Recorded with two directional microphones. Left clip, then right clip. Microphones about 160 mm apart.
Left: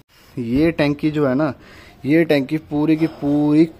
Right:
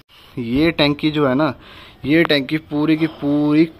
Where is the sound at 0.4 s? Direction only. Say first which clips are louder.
Right 1 dB; 5° left (ahead or behind).